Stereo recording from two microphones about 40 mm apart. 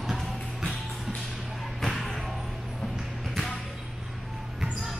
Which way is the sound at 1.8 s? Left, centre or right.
Centre.